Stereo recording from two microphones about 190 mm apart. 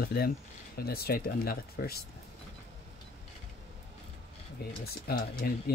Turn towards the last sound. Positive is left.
turn(degrees=50)  # may be behind; listen again after turning